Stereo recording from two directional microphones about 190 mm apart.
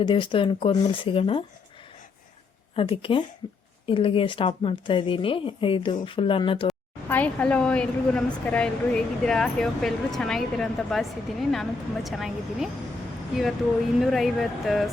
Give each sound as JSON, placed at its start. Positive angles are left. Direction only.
{"t": 0.0, "sound": "speech", "side_deg": 25}
{"t": 2.7, "sound": "speech", "side_deg": 30}
{"t": 6.7, "sound": "speech", "side_deg": 10}
{"t": 14.0, "sound": "speech", "side_deg": 0}